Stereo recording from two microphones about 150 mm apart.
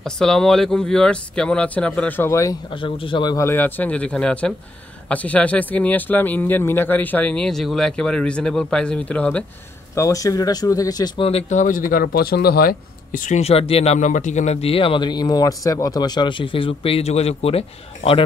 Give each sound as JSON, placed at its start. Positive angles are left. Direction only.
{"t": 0.0, "sound": "speech", "side_deg": 5}
{"t": 2.7, "sound": "a man's voice", "side_deg": 35}
{"t": 3.3, "sound": "speech", "side_deg": 15}
{"t": 9.9, "sound": "speech", "side_deg": 20}
{"t": 11.2, "sound": "a man's voice", "side_deg": 45}
{"t": 13.4, "sound": "a man's voice", "side_deg": 40}